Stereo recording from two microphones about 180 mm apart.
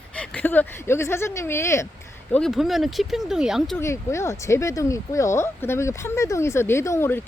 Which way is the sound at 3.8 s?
15° left (ahead or behind).